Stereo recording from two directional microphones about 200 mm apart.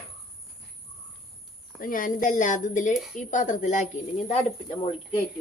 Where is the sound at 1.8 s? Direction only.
45° left (ahead or behind).